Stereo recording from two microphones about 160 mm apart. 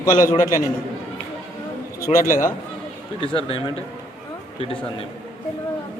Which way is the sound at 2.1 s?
55° left (ahead or behind).